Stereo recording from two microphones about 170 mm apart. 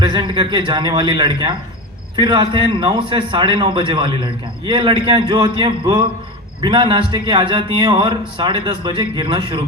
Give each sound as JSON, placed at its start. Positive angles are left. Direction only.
{"t": 0.0, "sound": "a man's voice", "side_deg": -25}